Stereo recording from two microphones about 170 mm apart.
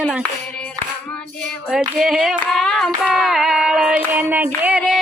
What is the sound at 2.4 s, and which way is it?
Hands, 5° left (ahead or behind).